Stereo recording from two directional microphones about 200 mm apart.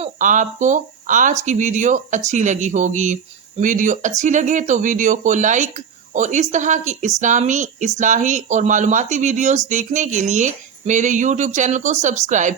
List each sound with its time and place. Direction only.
0.0 s speech: 40° right (ahead or behind)